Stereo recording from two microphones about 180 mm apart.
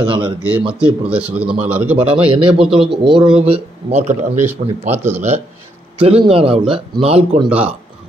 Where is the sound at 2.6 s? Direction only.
Centre (ahead or behind).